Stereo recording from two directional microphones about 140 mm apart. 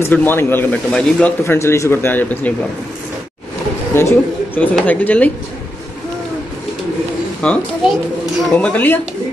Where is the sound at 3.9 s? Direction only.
20° left (ahead or behind).